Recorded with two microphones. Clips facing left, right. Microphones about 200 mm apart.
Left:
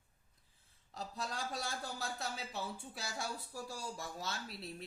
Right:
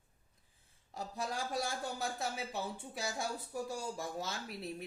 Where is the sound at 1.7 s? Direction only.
20° right (ahead or behind).